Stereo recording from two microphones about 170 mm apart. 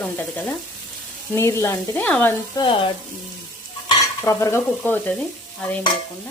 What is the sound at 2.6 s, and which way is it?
Sizzle, 30° left (ahead or behind).